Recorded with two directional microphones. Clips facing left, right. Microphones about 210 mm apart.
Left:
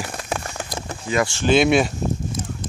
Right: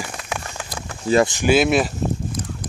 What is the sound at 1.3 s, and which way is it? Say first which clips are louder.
Speech: right 1 dB; 15° right (ahead or behind).